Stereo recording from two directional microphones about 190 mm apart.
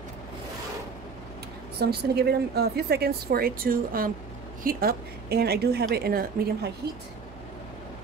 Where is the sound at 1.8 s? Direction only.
55° right (ahead or behind).